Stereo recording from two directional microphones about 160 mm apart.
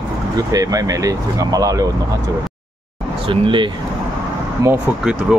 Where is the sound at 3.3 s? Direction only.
30° right (ahead or behind).